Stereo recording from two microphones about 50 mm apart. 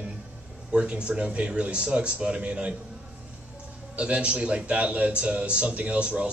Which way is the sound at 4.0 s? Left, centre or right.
Right.